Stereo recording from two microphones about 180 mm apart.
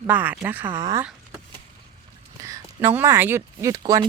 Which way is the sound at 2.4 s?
15° right (ahead or behind).